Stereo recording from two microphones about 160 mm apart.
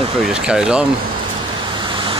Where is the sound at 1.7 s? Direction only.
30° right (ahead or behind).